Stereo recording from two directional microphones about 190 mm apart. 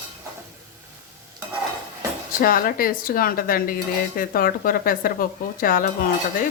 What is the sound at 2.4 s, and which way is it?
Speech, 50° left (ahead or behind).